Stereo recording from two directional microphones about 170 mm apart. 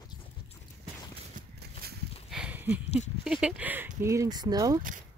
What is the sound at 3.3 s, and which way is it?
Speech, 5° right (ahead or behind).